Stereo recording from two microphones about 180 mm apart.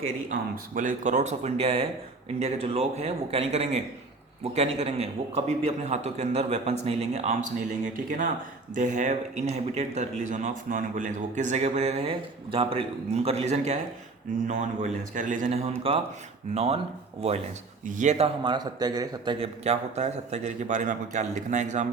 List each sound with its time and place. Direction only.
0.3 s speech: 50° right (ahead or behind)
7.9 s a man's voice: 50° right (ahead or behind); by 16.8 s 35° right (ahead or behind)
17.8 s speech: 45° right (ahead or behind)
18.4 s speech: 25° right (ahead or behind); by 21.8 s 40° right (ahead or behind)